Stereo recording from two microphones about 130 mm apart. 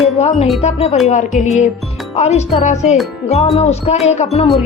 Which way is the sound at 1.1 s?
65° left (ahead or behind).